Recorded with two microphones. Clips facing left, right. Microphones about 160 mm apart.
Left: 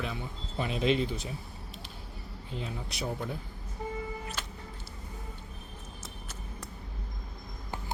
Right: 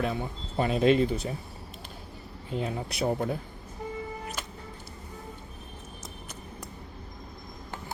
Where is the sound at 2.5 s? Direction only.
60° right (ahead or behind).